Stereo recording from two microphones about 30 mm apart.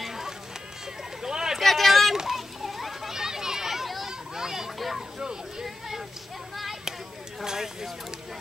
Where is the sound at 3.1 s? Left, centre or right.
Centre.